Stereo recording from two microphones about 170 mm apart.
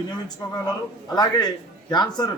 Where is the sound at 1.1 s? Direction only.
25° left (ahead or behind).